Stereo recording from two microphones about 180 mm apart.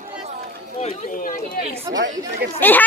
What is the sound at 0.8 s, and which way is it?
Speech, 35° left (ahead or behind).